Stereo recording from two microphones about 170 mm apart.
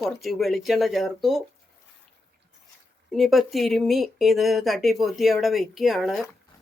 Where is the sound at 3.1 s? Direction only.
Centre (ahead or behind).